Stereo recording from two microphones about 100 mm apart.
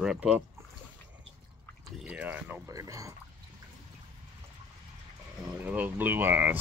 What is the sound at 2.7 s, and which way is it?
Speech, 35° right (ahead or behind).